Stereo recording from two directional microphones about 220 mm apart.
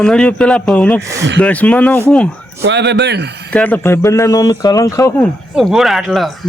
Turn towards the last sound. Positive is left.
turn(degrees=0)  # may be behind; listen again after turning